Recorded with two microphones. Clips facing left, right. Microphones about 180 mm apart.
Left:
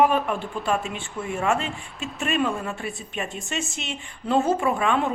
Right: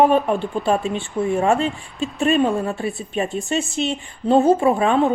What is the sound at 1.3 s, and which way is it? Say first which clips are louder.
A woman's voice: right 4 dB; 35° right (ahead or behind).